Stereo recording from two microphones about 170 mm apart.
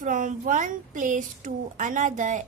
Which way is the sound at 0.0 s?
50° right (ahead or behind).